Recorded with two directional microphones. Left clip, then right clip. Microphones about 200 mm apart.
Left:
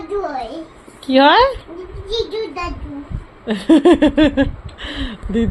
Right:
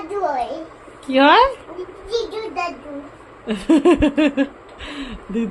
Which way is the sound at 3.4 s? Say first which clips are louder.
Left 3 dB; 10° left (ahead or behind).